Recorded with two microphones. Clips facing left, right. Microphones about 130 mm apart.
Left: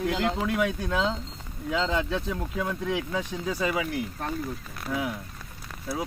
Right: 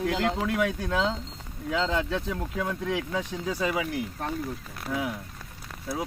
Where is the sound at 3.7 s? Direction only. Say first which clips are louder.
Even; 20° right (ahead or behind).